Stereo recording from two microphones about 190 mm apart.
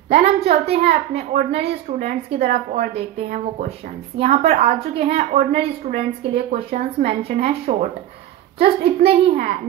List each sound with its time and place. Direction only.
0.1 s a woman's voice: 35° right (ahead or behind)